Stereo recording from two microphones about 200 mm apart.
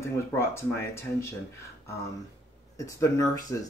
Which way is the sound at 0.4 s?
15° left (ahead or behind).